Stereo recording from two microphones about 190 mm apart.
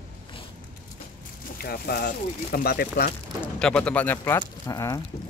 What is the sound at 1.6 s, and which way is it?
Speech, 55° left (ahead or behind).